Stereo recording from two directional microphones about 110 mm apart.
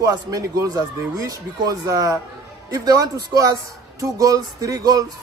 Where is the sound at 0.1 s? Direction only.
35° right (ahead or behind).